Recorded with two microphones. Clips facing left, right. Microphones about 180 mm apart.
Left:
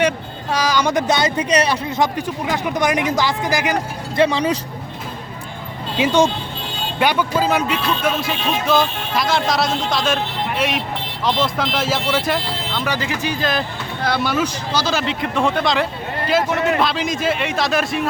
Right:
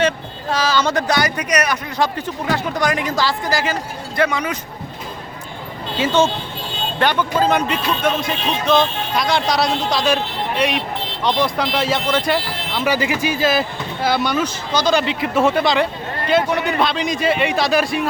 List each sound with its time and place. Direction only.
0.5 s speech: 15° left (ahead or behind); by 2.0 s 30° left (ahead or behind)
2.1 s speech: 15° left (ahead or behind)
4.2 s speech: 30° left (ahead or behind)
6.0 s speech: 15° left (ahead or behind)